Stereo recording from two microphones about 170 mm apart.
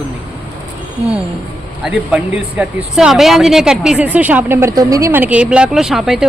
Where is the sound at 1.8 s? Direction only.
10° right (ahead or behind).